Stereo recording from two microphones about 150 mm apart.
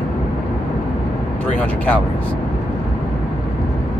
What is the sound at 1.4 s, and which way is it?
Speech, 10° left (ahead or behind).